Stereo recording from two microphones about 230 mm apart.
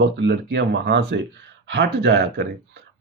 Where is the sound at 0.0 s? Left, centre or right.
Right.